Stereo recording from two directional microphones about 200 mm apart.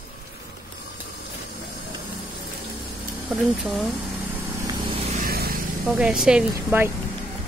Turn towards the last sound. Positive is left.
turn(degrees=-10)  # may be behind; listen again after turning